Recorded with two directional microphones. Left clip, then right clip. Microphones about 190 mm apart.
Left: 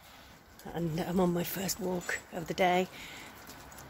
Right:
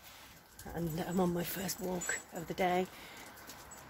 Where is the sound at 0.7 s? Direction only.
15° left (ahead or behind).